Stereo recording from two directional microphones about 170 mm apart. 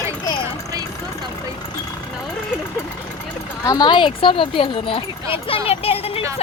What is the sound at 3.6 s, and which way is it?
Speech, 25° left (ahead or behind).